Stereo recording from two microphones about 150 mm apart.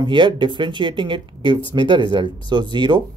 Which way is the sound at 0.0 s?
30° right (ahead or behind).